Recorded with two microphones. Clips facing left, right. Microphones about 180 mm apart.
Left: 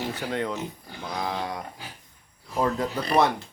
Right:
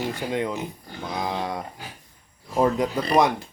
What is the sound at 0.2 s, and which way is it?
Speech, 10° right (ahead or behind).